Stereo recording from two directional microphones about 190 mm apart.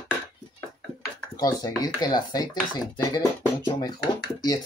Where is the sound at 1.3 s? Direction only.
20° left (ahead or behind).